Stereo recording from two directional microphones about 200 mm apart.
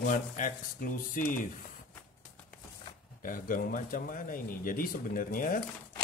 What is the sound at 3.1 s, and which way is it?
Speech, 45° left (ahead or behind).